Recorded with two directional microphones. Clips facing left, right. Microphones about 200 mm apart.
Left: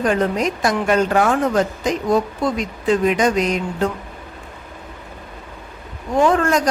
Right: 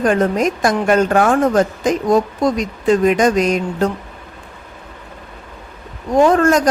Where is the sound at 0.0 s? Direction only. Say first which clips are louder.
Right 3 dB; 45° right (ahead or behind).